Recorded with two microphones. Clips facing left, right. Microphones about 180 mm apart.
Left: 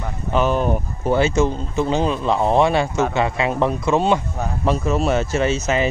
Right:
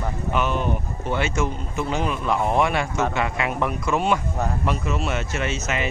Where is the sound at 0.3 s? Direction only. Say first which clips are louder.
Left 6 dB; 35° left (ahead or behind).